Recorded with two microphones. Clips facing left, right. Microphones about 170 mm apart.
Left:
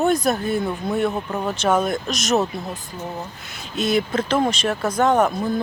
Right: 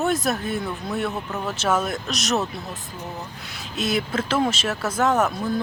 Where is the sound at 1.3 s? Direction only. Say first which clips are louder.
Left 4 dB; 15° left (ahead or behind).